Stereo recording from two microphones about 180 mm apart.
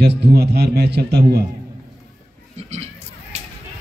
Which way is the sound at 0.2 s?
60° right (ahead or behind).